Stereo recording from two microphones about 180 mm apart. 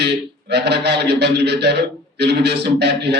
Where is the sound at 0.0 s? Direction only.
70° right (ahead or behind).